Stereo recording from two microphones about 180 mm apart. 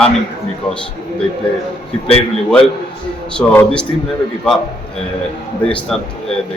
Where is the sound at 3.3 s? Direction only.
5° left (ahead or behind).